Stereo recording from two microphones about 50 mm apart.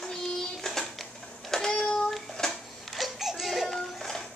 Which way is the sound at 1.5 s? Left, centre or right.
Centre.